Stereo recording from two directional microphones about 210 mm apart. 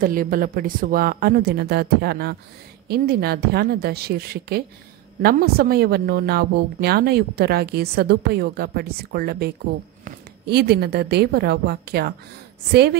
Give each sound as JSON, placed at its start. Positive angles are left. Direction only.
{"t": 0.0, "sound": "a woman's voice", "side_deg": -40}